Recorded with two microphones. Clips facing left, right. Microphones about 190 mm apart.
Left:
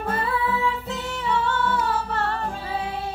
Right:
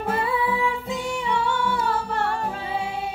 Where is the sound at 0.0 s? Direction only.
15° right (ahead or behind).